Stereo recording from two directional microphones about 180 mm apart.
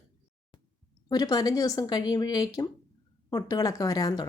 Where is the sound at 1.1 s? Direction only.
20° left (ahead or behind).